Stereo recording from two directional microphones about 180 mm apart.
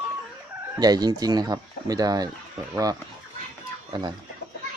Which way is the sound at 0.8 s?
20° right (ahead or behind).